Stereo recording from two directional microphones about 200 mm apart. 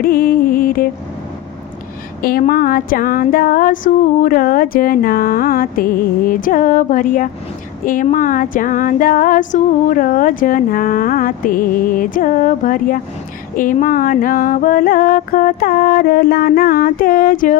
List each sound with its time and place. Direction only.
0.0 s music: 45° left (ahead or behind)
2.2 s female singing: 45° left (ahead or behind)